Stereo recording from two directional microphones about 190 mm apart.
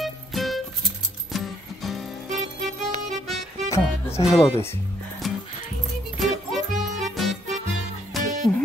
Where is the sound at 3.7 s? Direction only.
15° left (ahead or behind).